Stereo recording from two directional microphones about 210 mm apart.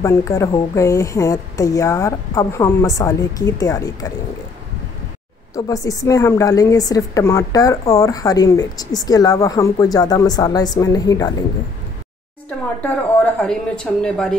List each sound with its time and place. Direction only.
0.0 s a woman's voice: 15° left (ahead or behind)
5.5 s a woman's voice: 15° left (ahead or behind)
12.8 s a woman's voice: 5° left (ahead or behind)